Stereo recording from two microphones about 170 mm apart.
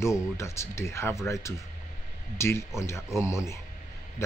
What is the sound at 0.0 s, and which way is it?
Speech, 15° left (ahead or behind).